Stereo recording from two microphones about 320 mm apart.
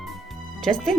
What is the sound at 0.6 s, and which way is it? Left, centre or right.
Speech, centre.